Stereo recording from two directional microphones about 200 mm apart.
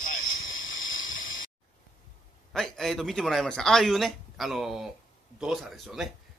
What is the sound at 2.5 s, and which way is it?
A man's voice, centre (ahead or behind).